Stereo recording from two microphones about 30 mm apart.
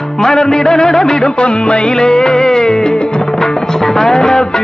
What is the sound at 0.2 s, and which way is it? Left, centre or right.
Music, centre.